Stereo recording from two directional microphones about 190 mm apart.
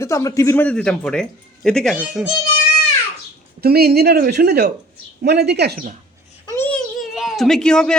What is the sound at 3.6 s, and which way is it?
A woman's voice, 55° right (ahead or behind).